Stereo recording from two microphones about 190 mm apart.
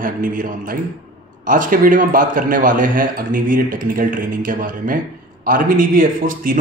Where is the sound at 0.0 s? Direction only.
45° right (ahead or behind).